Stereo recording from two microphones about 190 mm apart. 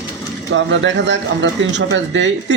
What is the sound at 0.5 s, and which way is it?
Speech, 75° right (ahead or behind).